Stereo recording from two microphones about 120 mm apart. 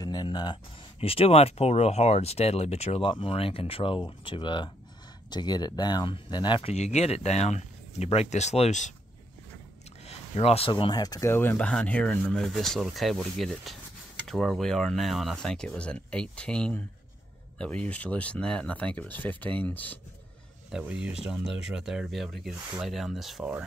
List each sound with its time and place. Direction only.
0.0 s a sound: 35° left (ahead or behind)
0.9 s speech: 55° left (ahead or behind)
3.1 s speech: 45° left (ahead or behind)
6.7 s speech: 65° left (ahead or behind)
10.0 s speech: 60° left (ahead or behind); by 11.0 s 45° left (ahead or behind)
11.0 s speech: 30° left (ahead or behind)
20.7 s speech: 5° right (ahead or behind)